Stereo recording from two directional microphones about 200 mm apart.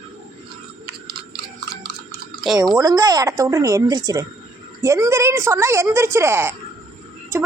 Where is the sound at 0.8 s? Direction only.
55° right (ahead or behind).